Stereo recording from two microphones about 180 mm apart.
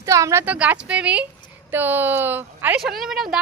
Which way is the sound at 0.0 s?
15° right (ahead or behind).